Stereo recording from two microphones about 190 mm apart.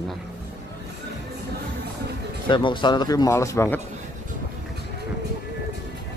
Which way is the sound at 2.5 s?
25° left (ahead or behind).